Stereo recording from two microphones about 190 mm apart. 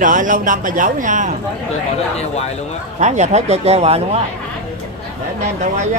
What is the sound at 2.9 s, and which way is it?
A man's voice, 40° right (ahead or behind).